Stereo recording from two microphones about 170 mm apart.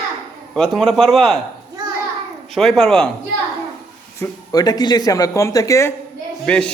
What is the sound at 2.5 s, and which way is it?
Speech, 5° left (ahead or behind).